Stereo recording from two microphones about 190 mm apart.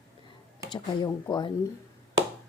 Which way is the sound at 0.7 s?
20° left (ahead or behind).